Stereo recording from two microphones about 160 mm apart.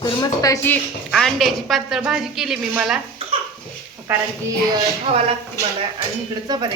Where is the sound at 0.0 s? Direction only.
25° left (ahead or behind).